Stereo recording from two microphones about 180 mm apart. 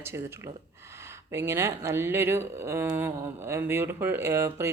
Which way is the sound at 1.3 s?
15° right (ahead or behind).